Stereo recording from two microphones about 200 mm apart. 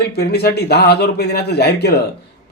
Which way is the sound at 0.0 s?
55° left (ahead or behind).